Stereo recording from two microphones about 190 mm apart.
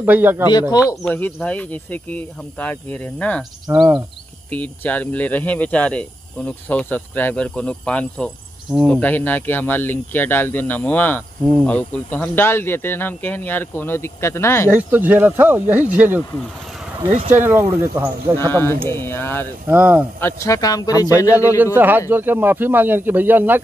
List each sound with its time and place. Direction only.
0.0 s speech: 10° right (ahead or behind)
0.5 s speech: 20° left (ahead or behind)
1.0 s speech: 5° left (ahead or behind)
4.5 s speech: 10° left (ahead or behind)
14.7 s speech: 10° right (ahead or behind)
17.1 s speech: 40° right (ahead or behind)
17.5 s speech: 10° right (ahead or behind)
18.4 s speech: 10° left (ahead or behind)
19.7 s speech: 10° right (ahead or behind)
20.2 s speech: 15° left (ahead or behind)
21.7 s speech: 10° right (ahead or behind)